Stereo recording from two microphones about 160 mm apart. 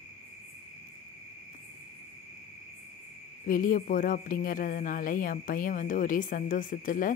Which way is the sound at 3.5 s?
60° left (ahead or behind).